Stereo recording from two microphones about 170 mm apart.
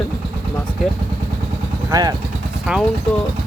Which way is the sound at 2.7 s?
Centre (ahead or behind).